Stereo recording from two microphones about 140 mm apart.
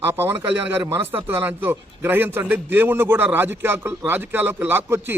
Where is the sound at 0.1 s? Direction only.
15° right (ahead or behind).